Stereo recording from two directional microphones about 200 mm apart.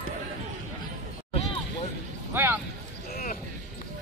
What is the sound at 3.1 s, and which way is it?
Basketball bounce, 45° left (ahead or behind).